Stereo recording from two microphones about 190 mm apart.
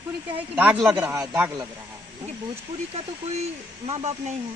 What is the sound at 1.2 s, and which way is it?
Speech, 15° right (ahead or behind).